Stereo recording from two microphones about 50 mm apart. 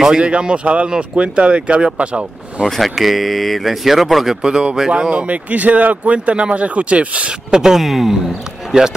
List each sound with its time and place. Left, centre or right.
0.2 s speech: right
2.6 s speech: centre
4.4 s speech: centre
5.1 s speech: right
7.5 s speech: centre